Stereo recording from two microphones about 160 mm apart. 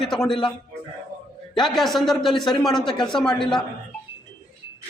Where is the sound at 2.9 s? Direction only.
30° left (ahead or behind).